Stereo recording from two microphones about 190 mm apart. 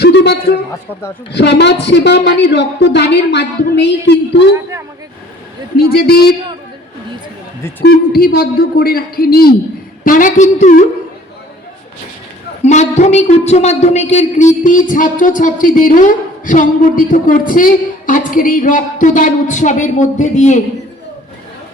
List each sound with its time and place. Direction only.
0.0 s a sound: 60° left (ahead or behind)
1.3 s a woman's voice: 65° left (ahead or behind)
5.7 s a woman's voice: 55° left (ahead or behind)
7.9 s a woman's voice: 55° left (ahead or behind)
12.6 s a woman's voice: 35° left (ahead or behind)